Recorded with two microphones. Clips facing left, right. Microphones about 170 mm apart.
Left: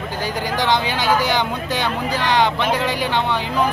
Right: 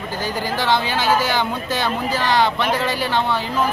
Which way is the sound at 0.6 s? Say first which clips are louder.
Even; 15° left (ahead or behind).